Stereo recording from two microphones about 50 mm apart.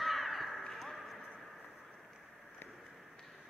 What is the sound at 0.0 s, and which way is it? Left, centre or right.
Crow, centre.